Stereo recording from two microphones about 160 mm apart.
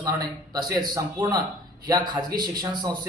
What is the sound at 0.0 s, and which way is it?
A man's voice, 25° right (ahead or behind).